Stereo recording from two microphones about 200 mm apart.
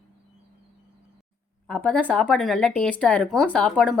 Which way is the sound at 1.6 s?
5° left (ahead or behind).